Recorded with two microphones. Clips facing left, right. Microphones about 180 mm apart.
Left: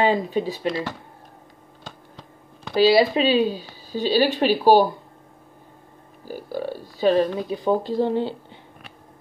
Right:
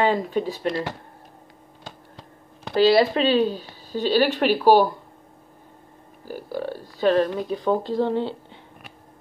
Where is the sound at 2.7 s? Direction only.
5° left (ahead or behind).